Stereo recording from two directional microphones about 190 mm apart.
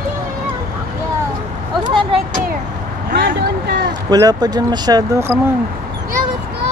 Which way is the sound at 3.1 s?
60° right (ahead or behind).